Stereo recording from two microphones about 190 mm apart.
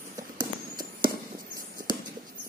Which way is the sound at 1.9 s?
25° right (ahead or behind).